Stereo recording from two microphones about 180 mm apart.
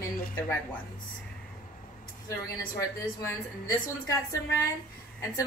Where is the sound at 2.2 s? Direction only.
20° left (ahead or behind).